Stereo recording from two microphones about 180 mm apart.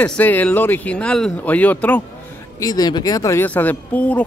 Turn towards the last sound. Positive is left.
turn(degrees=10)  # may be behind; listen again after turning